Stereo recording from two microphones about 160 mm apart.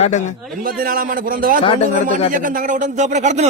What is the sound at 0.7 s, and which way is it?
A man's voice, 65° right (ahead or behind).